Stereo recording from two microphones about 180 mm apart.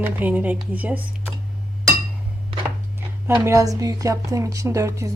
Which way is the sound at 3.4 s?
15° right (ahead or behind).